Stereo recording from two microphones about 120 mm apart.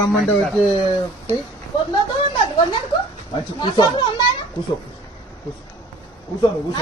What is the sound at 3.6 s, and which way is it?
Speech, 40° left (ahead or behind).